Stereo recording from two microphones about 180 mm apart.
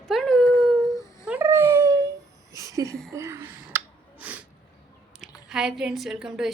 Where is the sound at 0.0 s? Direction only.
5° left (ahead or behind); by 2.0 s 20° right (ahead or behind).